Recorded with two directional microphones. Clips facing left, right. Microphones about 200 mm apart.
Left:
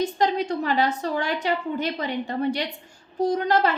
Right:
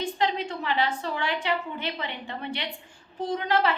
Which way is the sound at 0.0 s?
40° left (ahead or behind).